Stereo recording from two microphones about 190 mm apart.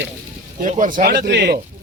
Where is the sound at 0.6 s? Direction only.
40° right (ahead or behind); by 1.6 s 60° right (ahead or behind).